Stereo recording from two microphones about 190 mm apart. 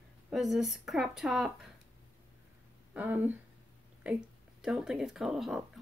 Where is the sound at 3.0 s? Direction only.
10° right (ahead or behind).